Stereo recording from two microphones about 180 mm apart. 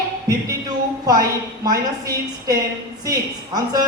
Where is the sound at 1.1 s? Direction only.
20° right (ahead or behind).